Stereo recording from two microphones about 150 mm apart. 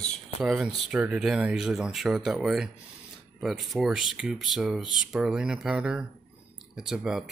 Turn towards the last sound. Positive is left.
turn(degrees=-5)  # may be behind; listen again after turning